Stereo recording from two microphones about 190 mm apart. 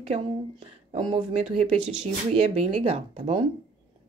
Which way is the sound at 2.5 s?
35° right (ahead or behind).